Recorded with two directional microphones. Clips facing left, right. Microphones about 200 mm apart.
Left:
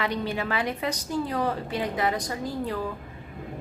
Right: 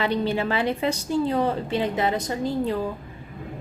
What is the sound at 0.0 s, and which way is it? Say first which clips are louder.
A woman's voice: right 5 dB; 30° right (ahead or behind).